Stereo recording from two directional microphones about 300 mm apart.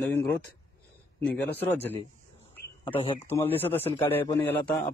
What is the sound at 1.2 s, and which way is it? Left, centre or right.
A man's voice, centre.